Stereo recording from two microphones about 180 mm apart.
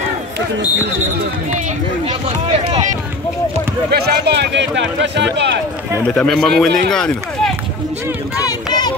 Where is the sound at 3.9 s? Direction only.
65° right (ahead or behind); by 5.3 s 90° right.